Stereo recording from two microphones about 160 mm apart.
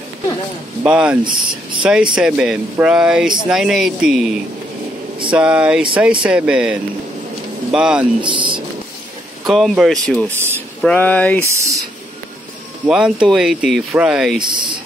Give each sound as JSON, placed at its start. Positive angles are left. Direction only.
{"t": 0.8, "sound": "speech", "side_deg": -5}
{"t": 5.3, "sound": "speech", "side_deg": -10}
{"t": 8.2, "sound": "speech", "side_deg": -30}
{"t": 9.4, "sound": "speech", "side_deg": 0}
{"t": 11.4, "sound": "speech", "side_deg": -20}
{"t": 12.8, "sound": "speech", "side_deg": -5}
{"t": 14.4, "sound": "speech", "side_deg": -30}